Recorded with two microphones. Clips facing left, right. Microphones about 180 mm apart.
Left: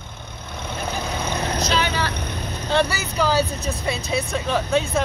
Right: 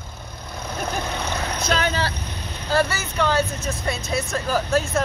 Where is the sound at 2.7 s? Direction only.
Centre (ahead or behind).